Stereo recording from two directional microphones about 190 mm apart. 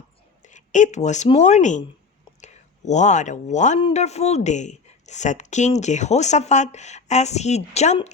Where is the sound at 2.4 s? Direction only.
40° left (ahead or behind).